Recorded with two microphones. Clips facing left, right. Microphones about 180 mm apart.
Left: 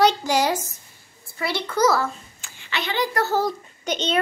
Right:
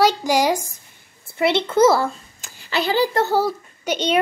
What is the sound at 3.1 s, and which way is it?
A child's voice, 15° right (ahead or behind).